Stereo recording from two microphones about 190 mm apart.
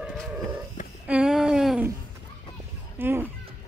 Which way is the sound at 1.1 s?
5° right (ahead or behind).